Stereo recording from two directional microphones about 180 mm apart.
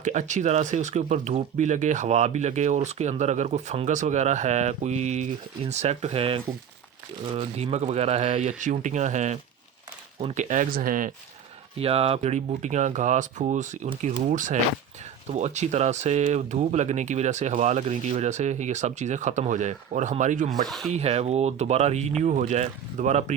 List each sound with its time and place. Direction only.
0.0 s speech: 40° right (ahead or behind)
11.8 s speech: 30° right (ahead or behind)
20.7 s speech: centre (ahead or behind)
20.9 s speech: 35° right (ahead or behind)